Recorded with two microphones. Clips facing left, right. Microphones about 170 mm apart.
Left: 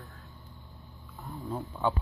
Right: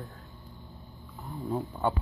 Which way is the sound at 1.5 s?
10° right (ahead or behind).